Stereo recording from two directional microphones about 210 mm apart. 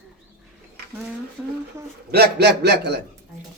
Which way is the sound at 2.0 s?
50° right (ahead or behind).